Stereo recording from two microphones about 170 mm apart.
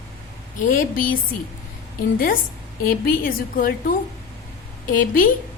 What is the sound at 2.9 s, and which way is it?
A woman's voice, 55° left (ahead or behind).